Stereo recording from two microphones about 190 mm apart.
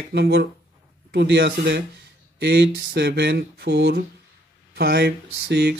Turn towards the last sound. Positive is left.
turn(degrees=-60)  # may be behind; listen again after turning